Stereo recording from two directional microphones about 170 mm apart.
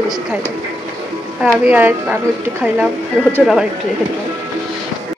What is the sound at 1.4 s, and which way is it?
Speech, 10° right (ahead or behind).